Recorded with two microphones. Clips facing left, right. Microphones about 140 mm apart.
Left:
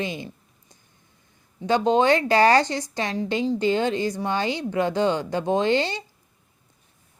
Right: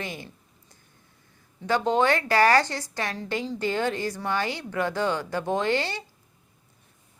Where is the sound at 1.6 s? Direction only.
20° left (ahead or behind).